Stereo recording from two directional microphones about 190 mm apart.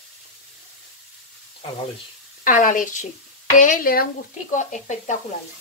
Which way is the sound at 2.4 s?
45° left (ahead or behind).